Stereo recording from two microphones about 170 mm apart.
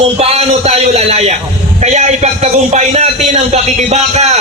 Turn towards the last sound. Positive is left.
turn(degrees=-40)  # may be behind; listen again after turning